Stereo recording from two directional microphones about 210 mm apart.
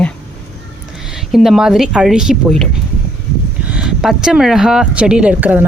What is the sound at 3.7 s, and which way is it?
Speech, 5° right (ahead or behind).